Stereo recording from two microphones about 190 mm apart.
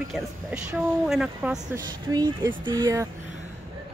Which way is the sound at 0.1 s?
5° right (ahead or behind).